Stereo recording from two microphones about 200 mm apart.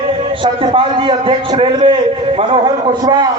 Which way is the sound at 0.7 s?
25° right (ahead or behind).